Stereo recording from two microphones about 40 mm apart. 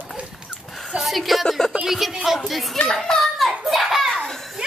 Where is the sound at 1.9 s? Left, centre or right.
Centre.